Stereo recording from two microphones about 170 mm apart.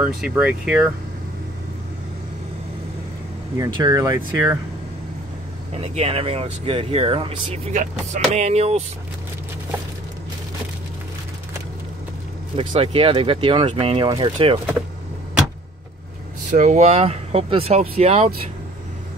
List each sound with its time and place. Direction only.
0.0 s speech: 5° right (ahead or behind)
3.5 s speech: 25° right (ahead or behind)
5.7 s speech: 35° right (ahead or behind)
12.5 s speech: 30° right (ahead or behind)
16.4 s speech: 45° right (ahead or behind)